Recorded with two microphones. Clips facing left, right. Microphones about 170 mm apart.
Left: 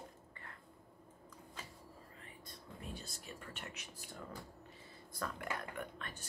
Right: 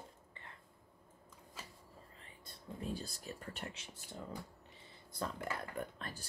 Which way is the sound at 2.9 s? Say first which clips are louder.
Right 5 dB; 35° right (ahead or behind).